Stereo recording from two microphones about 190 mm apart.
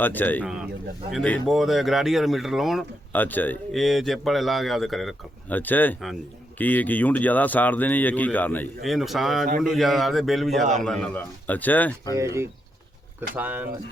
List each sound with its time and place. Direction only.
0.0 s speech: 10° left (ahead or behind)
0.4 s a man's voice: 5° right (ahead or behind)
12.1 s speech: 15° right (ahead or behind)